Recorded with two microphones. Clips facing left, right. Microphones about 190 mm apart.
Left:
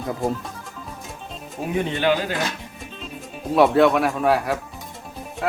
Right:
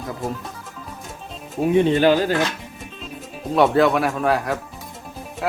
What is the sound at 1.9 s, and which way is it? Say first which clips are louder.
Speech: right 5 dB; 40° right (ahead or behind).